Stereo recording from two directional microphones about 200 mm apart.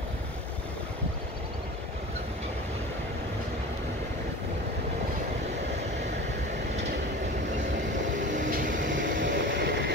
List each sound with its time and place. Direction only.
8.3 s vehicle: 45° right (ahead or behind)
9.2 s vehicle: 65° right (ahead or behind)